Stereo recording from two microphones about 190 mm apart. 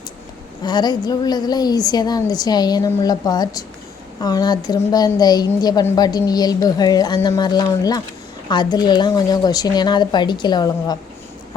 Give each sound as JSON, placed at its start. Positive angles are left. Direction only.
{"t": 0.6, "sound": "a woman's voice", "side_deg": 20}